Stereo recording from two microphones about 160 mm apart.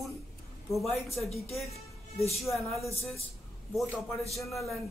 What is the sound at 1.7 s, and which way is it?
Music, 40° left (ahead or behind).